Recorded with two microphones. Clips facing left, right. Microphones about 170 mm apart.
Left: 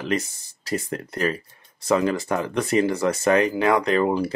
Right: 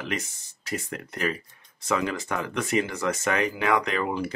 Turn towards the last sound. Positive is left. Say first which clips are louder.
# left 7 dB
turn(degrees=35)  # may be behind; listen again after turning